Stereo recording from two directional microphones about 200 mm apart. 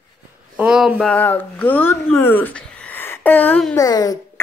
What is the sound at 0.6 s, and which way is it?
Speech, 5° right (ahead or behind).